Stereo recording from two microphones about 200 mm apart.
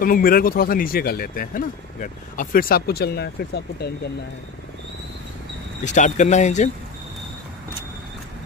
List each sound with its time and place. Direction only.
0.0 s speech: 45° left (ahead or behind)
5.9 s speech: 35° left (ahead or behind)